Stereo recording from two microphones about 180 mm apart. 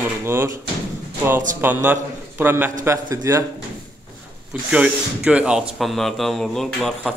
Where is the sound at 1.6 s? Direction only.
10° right (ahead or behind).